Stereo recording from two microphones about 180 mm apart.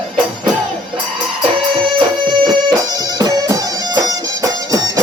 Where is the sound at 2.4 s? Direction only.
25° right (ahead or behind).